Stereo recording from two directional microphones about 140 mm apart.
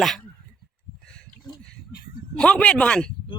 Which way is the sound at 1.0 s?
5° left (ahead or behind).